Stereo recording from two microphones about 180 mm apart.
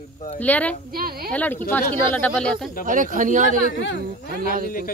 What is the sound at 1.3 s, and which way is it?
Speech, 10° left (ahead or behind).